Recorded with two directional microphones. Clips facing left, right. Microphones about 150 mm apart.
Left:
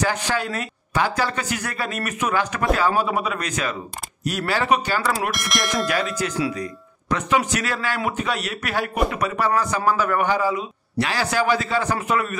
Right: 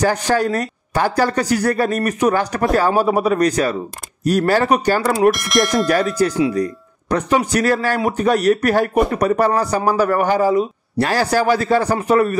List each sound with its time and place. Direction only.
0.0 s speech: 40° right (ahead or behind)
5.3 s speech: centre (ahead or behind)
5.9 s speech: 35° right (ahead or behind)